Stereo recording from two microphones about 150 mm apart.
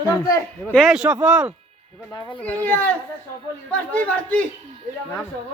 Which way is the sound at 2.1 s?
25° left (ahead or behind).